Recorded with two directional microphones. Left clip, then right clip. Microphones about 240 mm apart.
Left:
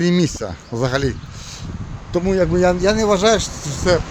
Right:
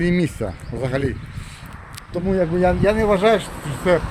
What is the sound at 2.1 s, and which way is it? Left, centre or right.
A man's voice, left.